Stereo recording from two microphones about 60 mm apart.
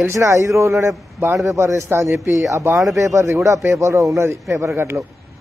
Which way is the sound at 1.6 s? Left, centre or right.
Right.